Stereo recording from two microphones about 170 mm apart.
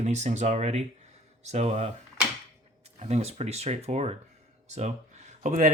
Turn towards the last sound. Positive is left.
turn(degrees=-45)  # may be behind; listen again after turning